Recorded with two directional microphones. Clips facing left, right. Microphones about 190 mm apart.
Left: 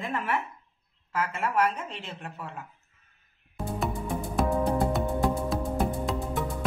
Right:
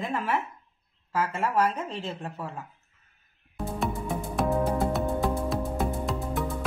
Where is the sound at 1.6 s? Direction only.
35° right (ahead or behind).